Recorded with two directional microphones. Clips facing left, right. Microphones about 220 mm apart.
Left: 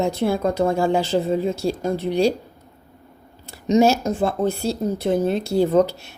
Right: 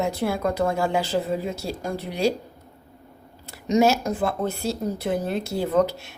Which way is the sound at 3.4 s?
30° left (ahead or behind).